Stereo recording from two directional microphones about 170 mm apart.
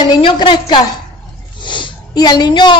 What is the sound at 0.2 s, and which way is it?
A woman's voice, 25° left (ahead or behind).